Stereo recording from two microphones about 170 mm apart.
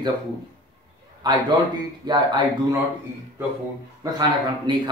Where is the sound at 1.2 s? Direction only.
25° right (ahead or behind).